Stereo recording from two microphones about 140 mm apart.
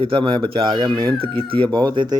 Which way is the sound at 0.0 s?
40° right (ahead or behind).